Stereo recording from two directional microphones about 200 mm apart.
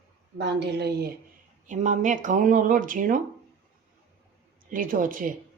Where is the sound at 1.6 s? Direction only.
40° right (ahead or behind).